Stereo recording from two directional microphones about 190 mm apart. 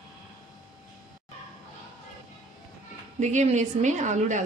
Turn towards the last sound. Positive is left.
turn(degrees=-40)  # may be behind; listen again after turning